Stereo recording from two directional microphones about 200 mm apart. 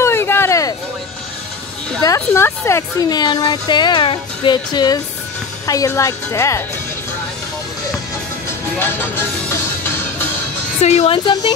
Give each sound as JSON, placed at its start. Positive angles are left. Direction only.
{"t": 0.0, "sound": "a sound", "side_deg": 10}
{"t": 2.0, "sound": "speech", "side_deg": 15}
{"t": 8.7, "sound": "speech", "side_deg": 10}
{"t": 10.8, "sound": "a woman's voice", "side_deg": 35}
{"t": 11.1, "sound": "speech", "side_deg": 20}